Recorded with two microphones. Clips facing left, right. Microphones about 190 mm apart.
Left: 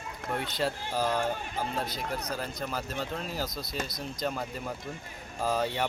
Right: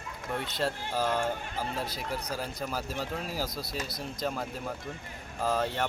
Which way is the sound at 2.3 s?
5° right (ahead or behind).